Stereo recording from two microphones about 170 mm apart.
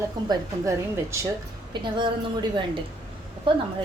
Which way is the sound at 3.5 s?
30° right (ahead or behind).